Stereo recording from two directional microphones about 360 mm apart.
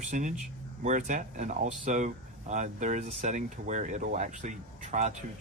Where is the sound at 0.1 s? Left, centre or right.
Right.